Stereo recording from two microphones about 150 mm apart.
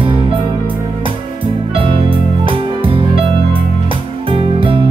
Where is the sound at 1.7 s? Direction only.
35° right (ahead or behind).